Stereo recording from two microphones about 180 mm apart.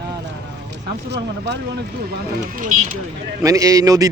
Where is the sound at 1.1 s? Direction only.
70° right (ahead or behind).